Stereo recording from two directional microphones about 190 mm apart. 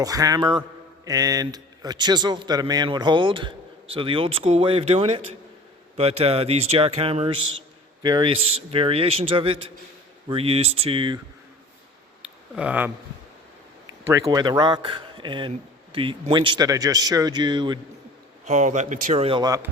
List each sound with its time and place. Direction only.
0.0 s a man's voice: 20° right (ahead or behind)
12.2 s a sound: 5° right (ahead or behind)
14.1 s a man's voice: 20° right (ahead or behind)
18.4 s speech: 40° right (ahead or behind); by 19.6 s 20° right (ahead or behind)